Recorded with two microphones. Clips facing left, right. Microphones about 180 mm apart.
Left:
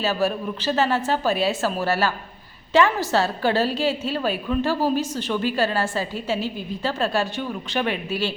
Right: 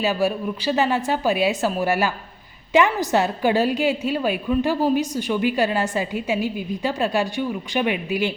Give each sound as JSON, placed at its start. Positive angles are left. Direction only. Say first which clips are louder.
{"t": 0.0, "sound": "a woman's voice", "louder": "right 2 dB", "side_deg": -15}